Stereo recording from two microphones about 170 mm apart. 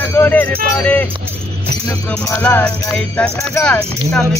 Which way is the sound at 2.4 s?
10° left (ahead or behind).